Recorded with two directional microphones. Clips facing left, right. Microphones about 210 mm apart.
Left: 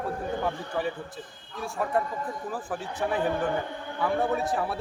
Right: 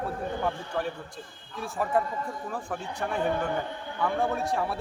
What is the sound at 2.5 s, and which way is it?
A man's voice, 5° left (ahead or behind).